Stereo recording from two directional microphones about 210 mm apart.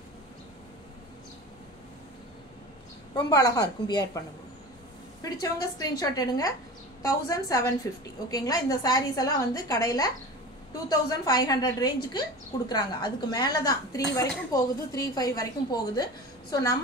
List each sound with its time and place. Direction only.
3.2 s a woman's voice: 20° left (ahead or behind)
5.2 s a woman's voice: 15° left (ahead or behind)